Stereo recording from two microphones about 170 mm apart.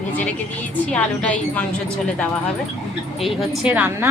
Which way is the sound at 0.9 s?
5° left (ahead or behind).